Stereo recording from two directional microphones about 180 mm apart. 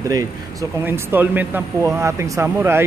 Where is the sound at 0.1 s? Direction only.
20° right (ahead or behind).